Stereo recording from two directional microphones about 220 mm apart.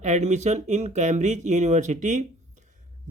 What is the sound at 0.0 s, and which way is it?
Speech, 30° right (ahead or behind).